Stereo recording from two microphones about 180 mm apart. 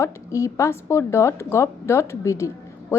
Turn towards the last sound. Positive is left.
turn(degrees=15)  # may be behind; listen again after turning